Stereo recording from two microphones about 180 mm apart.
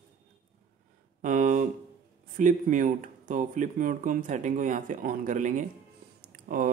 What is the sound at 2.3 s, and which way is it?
Speech, 45° right (ahead or behind).